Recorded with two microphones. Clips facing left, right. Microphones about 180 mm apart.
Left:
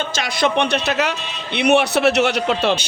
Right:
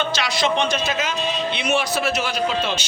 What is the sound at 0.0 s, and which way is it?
A man's voice, 45° left (ahead or behind).